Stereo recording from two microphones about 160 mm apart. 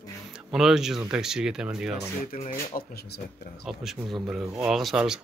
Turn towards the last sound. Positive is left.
turn(degrees=0)  # may be behind; listen again after turning